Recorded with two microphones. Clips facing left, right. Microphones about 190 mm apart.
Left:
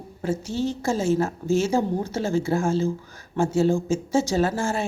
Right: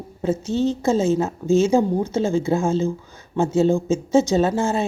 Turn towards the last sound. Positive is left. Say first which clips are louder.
# right 4 dB
turn(degrees=-20)  # may be behind; listen again after turning